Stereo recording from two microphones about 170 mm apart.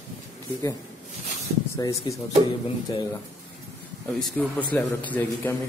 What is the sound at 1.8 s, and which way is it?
Speech, 20° left (ahead or behind).